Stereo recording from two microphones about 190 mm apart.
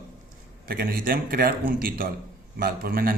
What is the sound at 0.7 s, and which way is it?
A man's voice, 50° right (ahead or behind).